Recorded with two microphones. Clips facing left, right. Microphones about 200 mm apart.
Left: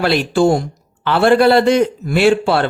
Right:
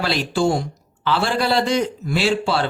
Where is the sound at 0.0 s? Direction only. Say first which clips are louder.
Left 6 dB; 55° left (ahead or behind).